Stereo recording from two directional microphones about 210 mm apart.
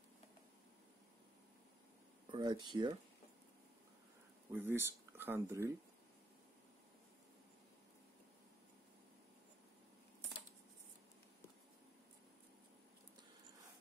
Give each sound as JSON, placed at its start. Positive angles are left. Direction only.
{"t": 2.3, "sound": "speech", "side_deg": -20}
{"t": 4.5, "sound": "speech", "side_deg": -10}